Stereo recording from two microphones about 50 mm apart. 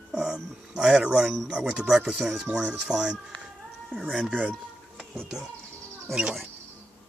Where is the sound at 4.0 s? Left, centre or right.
Centre.